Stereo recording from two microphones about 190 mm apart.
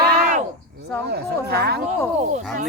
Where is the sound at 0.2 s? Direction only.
40° right (ahead or behind).